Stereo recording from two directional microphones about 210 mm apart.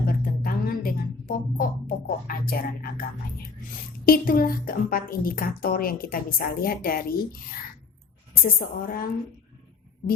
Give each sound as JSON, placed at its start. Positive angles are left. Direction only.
{"t": 0.1, "sound": "music", "side_deg": 45}
{"t": 4.0, "sound": "a woman's voice", "side_deg": 45}
{"t": 8.4, "sound": "a woman's voice", "side_deg": 45}